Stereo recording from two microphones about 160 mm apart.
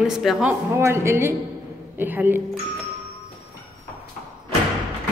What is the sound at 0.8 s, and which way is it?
A woman's voice, 15° right (ahead or behind).